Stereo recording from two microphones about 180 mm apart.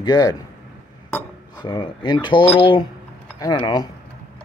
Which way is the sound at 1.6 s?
25° left (ahead or behind).